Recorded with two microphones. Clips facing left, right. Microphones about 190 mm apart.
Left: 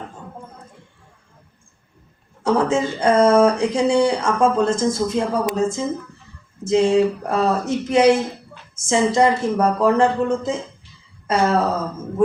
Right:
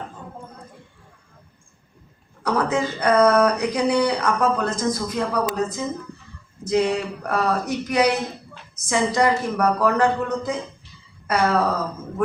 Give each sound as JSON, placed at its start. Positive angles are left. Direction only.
{"t": 2.4, "sound": "speech", "side_deg": 25}